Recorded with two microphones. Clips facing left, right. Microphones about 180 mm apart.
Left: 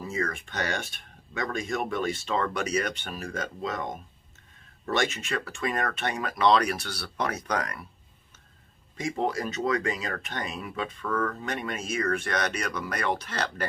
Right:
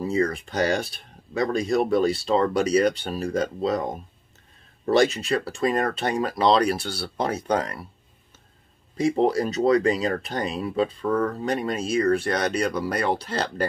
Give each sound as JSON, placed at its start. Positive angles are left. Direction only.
{"t": 0.0, "sound": "speech", "side_deg": -35}
{"t": 8.9, "sound": "speech", "side_deg": -35}